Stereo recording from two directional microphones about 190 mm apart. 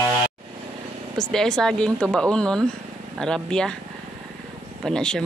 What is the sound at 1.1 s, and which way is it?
Speech, 5° left (ahead or behind).